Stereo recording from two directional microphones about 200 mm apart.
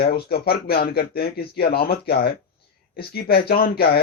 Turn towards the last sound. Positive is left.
turn(degrees=50)  # may be behind; listen again after turning